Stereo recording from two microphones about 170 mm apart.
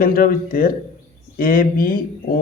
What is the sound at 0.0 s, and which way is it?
Speech, 60° left (ahead or behind).